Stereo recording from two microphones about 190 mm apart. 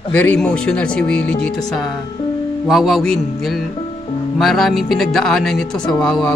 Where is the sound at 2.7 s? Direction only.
Centre (ahead or behind).